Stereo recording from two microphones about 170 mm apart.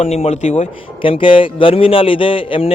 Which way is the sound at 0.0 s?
40° left (ahead or behind).